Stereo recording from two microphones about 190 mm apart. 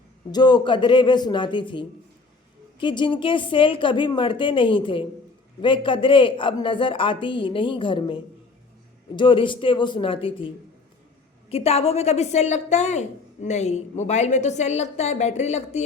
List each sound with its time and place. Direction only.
0.3 s a woman's voice: 20° left (ahead or behind)
11.4 s a woman's voice: 30° left (ahead or behind)